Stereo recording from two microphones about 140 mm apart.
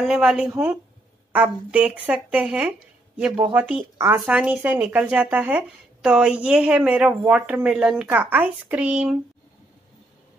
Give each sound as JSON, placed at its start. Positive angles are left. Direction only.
{"t": 0.0, "sound": "speech", "side_deg": -5}